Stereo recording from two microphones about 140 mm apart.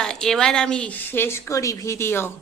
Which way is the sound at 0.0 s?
5° left (ahead or behind).